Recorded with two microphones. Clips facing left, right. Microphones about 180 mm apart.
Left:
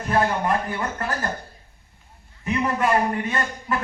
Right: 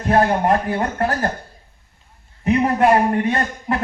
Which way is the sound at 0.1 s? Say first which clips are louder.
Right 6 dB; 55° right (ahead or behind).